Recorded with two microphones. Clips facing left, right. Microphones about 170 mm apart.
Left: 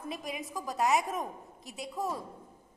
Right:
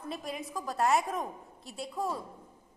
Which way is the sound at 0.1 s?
Centre (ahead or behind).